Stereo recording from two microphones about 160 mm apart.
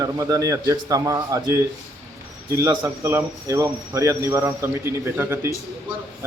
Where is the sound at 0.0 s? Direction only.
20° right (ahead or behind).